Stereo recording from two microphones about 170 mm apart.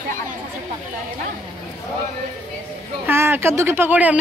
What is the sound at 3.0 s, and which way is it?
A woman's voice, 15° right (ahead or behind).